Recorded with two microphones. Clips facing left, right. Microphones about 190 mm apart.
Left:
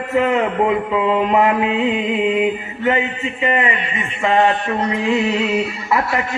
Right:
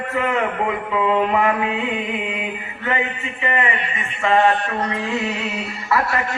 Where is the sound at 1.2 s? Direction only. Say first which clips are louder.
Left 4 dB; 20° left (ahead or behind).